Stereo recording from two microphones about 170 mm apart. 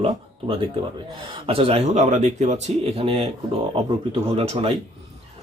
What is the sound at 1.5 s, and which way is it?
Speech, 35° right (ahead or behind).